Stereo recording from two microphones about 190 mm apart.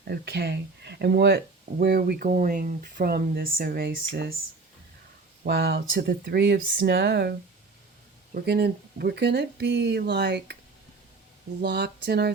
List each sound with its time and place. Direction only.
0.0 s speech: 55° right (ahead or behind)
5.5 s speech: 60° right (ahead or behind)
11.6 s speech: 60° right (ahead or behind)